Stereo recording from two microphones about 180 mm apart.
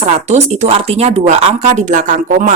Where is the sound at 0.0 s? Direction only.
40° right (ahead or behind).